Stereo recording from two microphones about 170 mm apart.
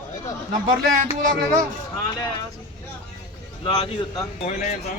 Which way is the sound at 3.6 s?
25° left (ahead or behind).